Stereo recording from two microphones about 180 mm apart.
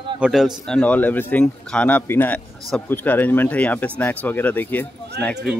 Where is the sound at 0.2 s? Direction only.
5° right (ahead or behind).